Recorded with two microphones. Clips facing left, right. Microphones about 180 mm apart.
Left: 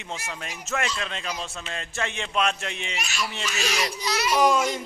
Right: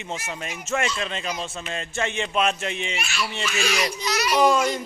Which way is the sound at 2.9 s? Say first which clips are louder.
Right 2 dB; 40° left (ahead or behind).